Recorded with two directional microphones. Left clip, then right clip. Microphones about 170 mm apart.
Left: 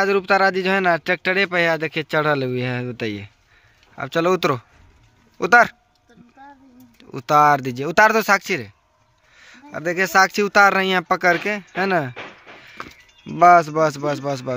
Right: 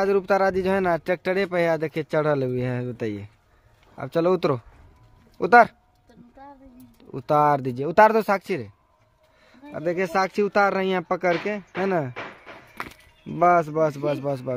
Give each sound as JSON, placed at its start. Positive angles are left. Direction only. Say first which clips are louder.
{"t": 0.0, "sound": "speech", "louder": "left 4 dB", "side_deg": 0}
{"t": 7.0, "sound": "speech", "louder": "left 5 dB", "side_deg": 0}
{"t": 13.4, "sound": "speech", "louder": "left 6 dB", "side_deg": 5}